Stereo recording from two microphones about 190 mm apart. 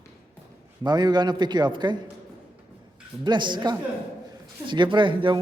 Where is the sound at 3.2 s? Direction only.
25° right (ahead or behind).